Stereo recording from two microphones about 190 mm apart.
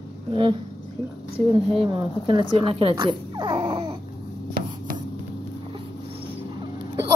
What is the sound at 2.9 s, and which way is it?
Baby cry, 25° right (ahead or behind).